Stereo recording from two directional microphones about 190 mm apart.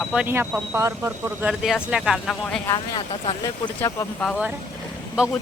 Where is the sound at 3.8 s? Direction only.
15° left (ahead or behind).